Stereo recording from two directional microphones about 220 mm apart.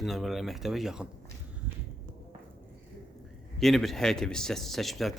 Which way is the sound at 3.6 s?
Centre (ahead or behind).